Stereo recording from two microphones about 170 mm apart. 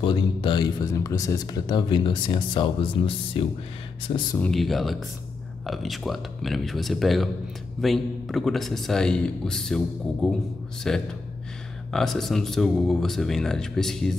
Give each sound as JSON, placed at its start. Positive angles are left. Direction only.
{"t": 0.0, "sound": "speech", "side_deg": 30}
{"t": 4.4, "sound": "a man's voice", "side_deg": 0}